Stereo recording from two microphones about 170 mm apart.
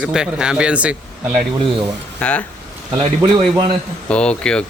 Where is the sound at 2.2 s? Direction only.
10° left (ahead or behind).